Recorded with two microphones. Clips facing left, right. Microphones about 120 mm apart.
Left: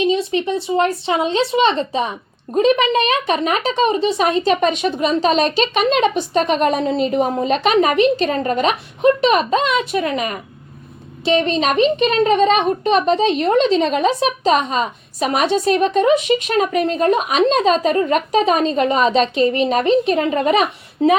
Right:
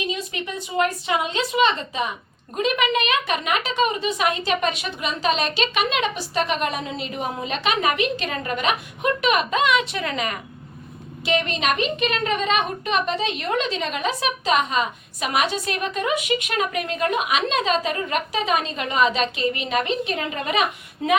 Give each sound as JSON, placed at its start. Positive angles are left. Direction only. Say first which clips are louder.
{"t": 0.0, "sound": "a woman's voice", "louder": "left 11 dB", "side_deg": 30}